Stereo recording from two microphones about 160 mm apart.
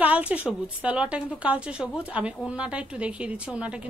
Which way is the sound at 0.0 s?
10° right (ahead or behind).